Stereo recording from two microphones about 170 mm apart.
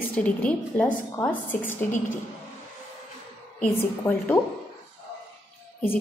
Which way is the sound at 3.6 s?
10° left (ahead or behind).